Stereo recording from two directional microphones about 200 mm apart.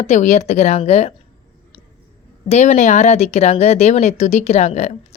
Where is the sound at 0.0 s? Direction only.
35° left (ahead or behind).